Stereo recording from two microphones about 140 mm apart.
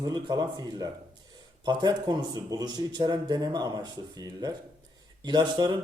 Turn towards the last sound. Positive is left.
turn(degrees=-30)  # may be behind; listen again after turning